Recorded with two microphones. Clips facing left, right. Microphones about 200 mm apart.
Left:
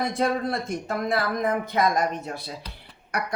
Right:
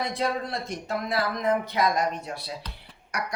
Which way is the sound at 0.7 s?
50° left (ahead or behind).